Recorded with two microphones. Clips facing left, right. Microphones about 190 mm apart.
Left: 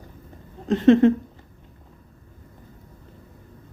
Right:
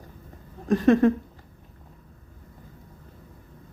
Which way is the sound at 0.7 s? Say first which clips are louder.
Left 3 dB; 25° left (ahead or behind).